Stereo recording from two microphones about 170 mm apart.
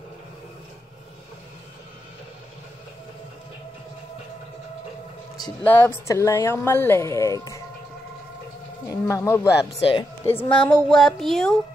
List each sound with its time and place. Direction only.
5.6 s a woman's voice: 10° left (ahead or behind)
8.9 s a woman's voice: 15° left (ahead or behind)
9.8 s speech: 30° left (ahead or behind)
10.2 s speech: 10° left (ahead or behind)